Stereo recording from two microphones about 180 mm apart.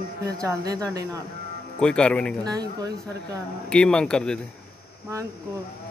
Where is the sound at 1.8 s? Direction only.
5° left (ahead or behind).